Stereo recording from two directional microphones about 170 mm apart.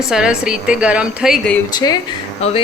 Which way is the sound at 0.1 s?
5° right (ahead or behind).